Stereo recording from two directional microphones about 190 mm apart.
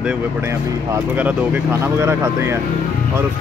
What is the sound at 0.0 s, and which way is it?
Speech, 10° right (ahead or behind).